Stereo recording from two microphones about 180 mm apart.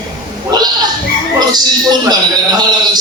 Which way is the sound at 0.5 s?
20° right (ahead or behind).